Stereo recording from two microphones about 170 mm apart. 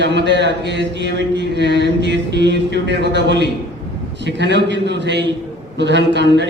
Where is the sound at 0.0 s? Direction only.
90° right.